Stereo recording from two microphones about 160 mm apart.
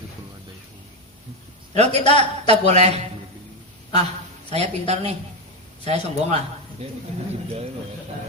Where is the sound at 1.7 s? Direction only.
40° right (ahead or behind).